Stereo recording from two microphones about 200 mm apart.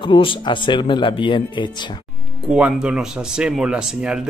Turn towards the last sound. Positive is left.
turn(degrees=-5)  # may be behind; listen again after turning